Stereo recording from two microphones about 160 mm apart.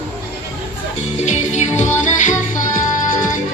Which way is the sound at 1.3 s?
45° left (ahead or behind).